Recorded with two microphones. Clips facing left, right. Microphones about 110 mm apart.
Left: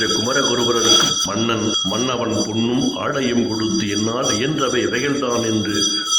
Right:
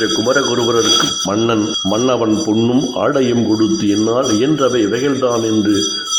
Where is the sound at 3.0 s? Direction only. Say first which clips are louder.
Right 6 dB; 40° right (ahead or behind).